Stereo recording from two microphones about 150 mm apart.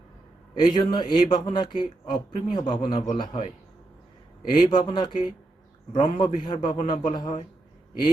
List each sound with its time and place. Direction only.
0.7 s a man's voice: 30° left (ahead or behind)
4.5 s a man's voice: 30° left (ahead or behind)